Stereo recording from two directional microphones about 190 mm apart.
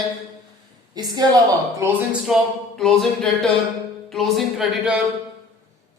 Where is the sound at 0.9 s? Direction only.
20° right (ahead or behind).